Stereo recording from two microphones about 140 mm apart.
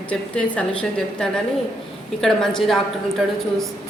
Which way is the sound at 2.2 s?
5° left (ahead or behind).